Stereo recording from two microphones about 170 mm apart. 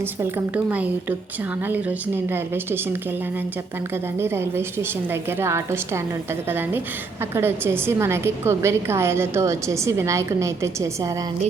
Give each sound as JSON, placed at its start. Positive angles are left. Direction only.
{"t": 0.2, "sound": "a woman's voice", "side_deg": -10}
{"t": 4.2, "sound": "a woman's voice", "side_deg": -15}